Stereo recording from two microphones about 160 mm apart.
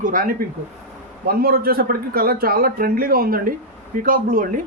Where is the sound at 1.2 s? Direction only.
70° right (ahead or behind).